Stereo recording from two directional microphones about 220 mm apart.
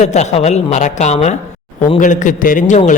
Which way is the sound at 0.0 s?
30° left (ahead or behind).